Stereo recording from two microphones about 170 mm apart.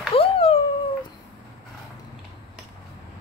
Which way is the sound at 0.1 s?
35° left (ahead or behind).